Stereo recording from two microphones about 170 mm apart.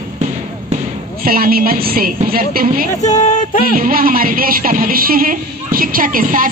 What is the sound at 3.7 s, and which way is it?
Speech, 55° right (ahead or behind).